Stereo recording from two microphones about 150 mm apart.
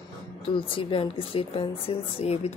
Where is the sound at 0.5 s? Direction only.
35° left (ahead or behind).